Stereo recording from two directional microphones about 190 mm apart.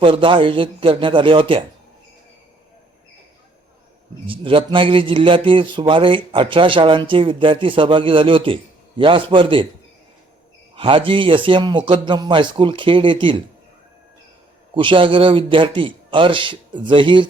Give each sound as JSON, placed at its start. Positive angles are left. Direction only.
{"t": 0.0, "sound": "speech", "side_deg": -25}
{"t": 4.3, "sound": "speech", "side_deg": -30}
{"t": 10.8, "sound": "speech", "side_deg": -25}
{"t": 14.8, "sound": "speech", "side_deg": -25}